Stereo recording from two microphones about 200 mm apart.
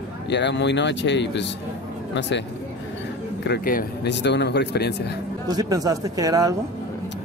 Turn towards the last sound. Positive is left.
turn(degrees=-15)  # may be behind; listen again after turning